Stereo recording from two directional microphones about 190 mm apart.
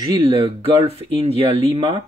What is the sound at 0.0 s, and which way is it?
Speech, 25° right (ahead or behind).